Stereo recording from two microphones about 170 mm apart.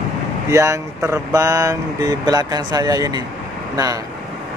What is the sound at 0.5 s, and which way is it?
Speech, 20° right (ahead or behind).